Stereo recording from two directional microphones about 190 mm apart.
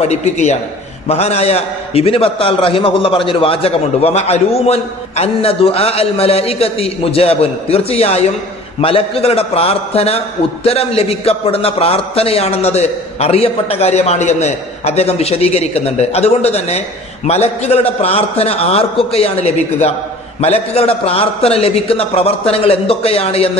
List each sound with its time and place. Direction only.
0.0 s a man's voice: 35° left (ahead or behind)